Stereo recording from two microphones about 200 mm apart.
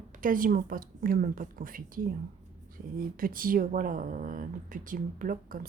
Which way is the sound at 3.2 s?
45° right (ahead or behind).